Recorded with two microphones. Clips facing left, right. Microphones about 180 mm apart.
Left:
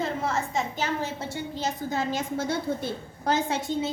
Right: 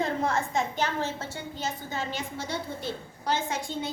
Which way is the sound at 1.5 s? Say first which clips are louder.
Left 5 dB; 40° left (ahead or behind).